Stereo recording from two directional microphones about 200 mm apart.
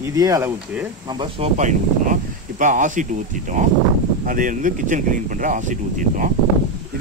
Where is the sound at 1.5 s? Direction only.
40° right (ahead or behind).